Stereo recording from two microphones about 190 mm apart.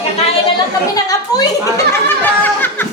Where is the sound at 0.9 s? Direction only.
20° left (ahead or behind).